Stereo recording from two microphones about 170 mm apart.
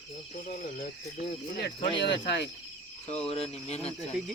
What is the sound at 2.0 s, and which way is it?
Speech, 85° left.